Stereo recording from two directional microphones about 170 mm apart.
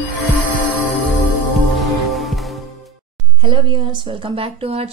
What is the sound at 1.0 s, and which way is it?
Music, centre (ahead or behind).